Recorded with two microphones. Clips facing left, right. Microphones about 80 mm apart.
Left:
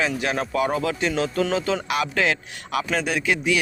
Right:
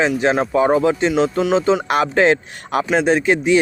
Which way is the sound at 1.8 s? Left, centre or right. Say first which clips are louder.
Right 8 dB; right.